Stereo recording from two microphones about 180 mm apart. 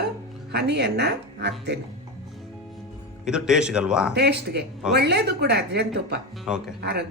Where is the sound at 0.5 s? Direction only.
65° right (ahead or behind).